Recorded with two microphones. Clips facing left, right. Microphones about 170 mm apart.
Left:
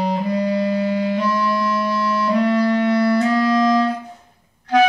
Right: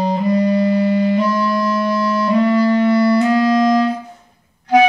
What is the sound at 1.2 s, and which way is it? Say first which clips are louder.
Music: right 3 dB; 40° right (ahead or behind).